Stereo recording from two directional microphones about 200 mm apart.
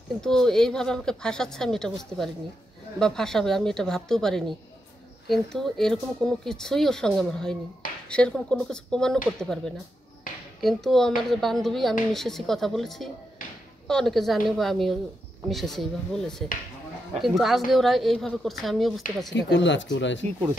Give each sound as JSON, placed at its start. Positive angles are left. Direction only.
{"t": 0.2, "sound": "speech", "side_deg": 5}
{"t": 13.4, "sound": "a sound", "side_deg": 45}
{"t": 13.8, "sound": "speech", "side_deg": 0}
{"t": 19.3, "sound": "speech", "side_deg": 65}